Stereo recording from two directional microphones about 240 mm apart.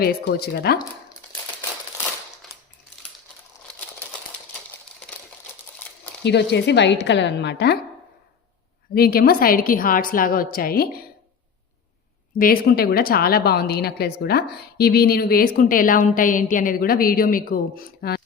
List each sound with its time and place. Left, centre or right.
0.0 s a woman's voice: left
6.2 s a woman's voice: left
9.0 s a woman's voice: left
12.3 s a woman's voice: left